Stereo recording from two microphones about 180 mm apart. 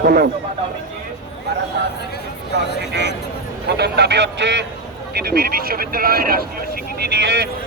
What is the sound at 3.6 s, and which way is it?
A man's voice, 65° right (ahead or behind).